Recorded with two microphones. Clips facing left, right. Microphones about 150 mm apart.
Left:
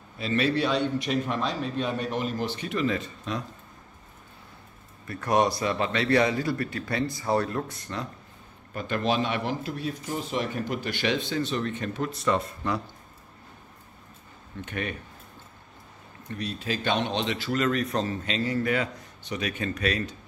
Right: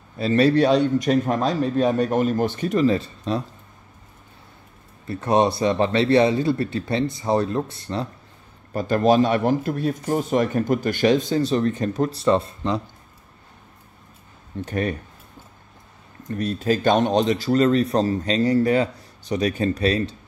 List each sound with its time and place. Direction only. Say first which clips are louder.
0.2 s a man's voice: right 8 dB; 40° right (ahead or behind)
5.0 s a man's voice: right 5 dB; 25° right (ahead or behind)
14.6 s a man's voice: right 8 dB; 35° right (ahead or behind)
16.3 s a man's voice: right 9 dB; 45° right (ahead or behind)